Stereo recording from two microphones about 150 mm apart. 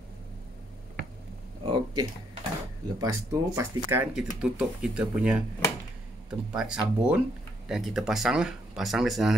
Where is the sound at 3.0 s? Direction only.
20° right (ahead or behind).